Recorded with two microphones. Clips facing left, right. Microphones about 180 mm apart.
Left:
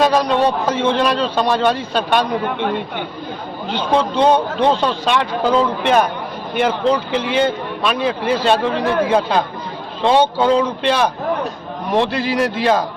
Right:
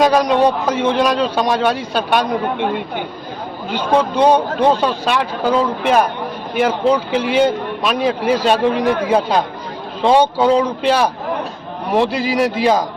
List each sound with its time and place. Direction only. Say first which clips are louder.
0.0 s a man's voice: right 2 dB; 10° right (ahead or behind)
3.7 s a man's voice: right 1 dB; 10° right (ahead or behind)